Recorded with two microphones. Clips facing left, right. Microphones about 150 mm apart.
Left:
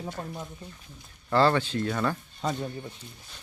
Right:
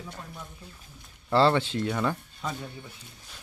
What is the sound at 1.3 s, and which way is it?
Speech, 25° right (ahead or behind).